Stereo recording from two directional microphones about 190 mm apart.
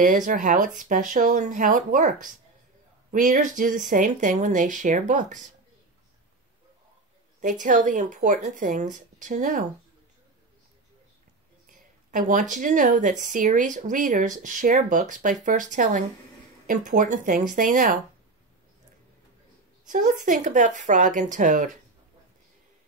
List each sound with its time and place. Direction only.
0.0 s speech: 45° right (ahead or behind)
7.4 s speech: 40° right (ahead or behind)
11.7 s speech: 45° right (ahead or behind)
19.9 s speech: 45° right (ahead or behind)